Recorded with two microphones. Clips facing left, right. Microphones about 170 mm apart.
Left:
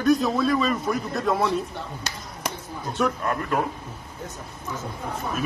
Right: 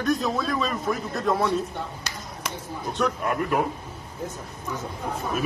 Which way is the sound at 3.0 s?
5° left (ahead or behind).